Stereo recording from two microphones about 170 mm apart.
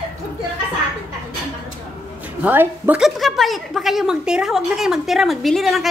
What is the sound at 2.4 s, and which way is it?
A woman's voice, 10° right (ahead or behind).